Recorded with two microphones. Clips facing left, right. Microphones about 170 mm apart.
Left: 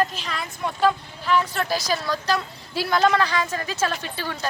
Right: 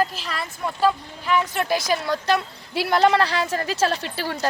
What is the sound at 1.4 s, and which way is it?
A woman's voice, 20° right (ahead or behind).